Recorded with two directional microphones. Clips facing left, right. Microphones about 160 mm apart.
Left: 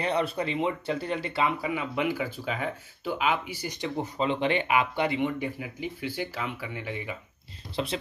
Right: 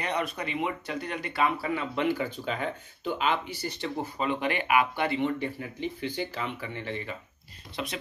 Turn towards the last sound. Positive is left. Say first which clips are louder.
# left 4 dB
turn(degrees=30)  # may be behind; listen again after turning